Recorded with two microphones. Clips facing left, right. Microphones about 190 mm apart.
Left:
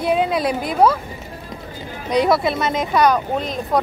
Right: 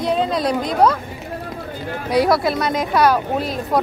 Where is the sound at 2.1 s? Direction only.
Centre (ahead or behind).